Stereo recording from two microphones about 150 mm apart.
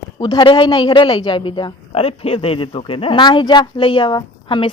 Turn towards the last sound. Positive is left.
turn(degrees=30)  # may be behind; listen again after turning